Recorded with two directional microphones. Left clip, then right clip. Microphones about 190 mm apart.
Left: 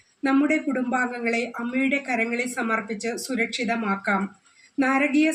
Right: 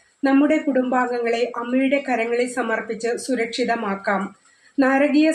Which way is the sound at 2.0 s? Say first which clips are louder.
Right 4 dB; 5° left (ahead or behind).